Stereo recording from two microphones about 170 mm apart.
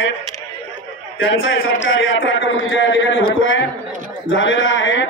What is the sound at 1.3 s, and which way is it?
A man's voice, 90° left.